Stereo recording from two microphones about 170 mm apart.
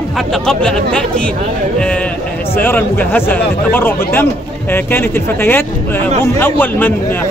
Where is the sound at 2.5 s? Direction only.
10° left (ahead or behind).